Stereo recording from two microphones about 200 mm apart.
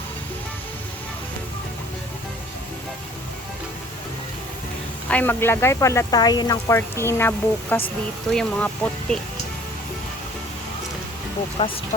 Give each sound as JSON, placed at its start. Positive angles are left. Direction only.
{"t": 5.0, "sound": "speech", "side_deg": 10}
{"t": 11.6, "sound": "speech", "side_deg": 25}